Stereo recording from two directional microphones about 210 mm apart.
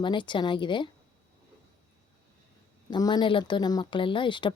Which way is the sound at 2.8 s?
20° left (ahead or behind).